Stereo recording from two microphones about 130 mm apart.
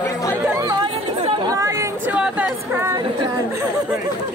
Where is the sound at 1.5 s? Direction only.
25° right (ahead or behind).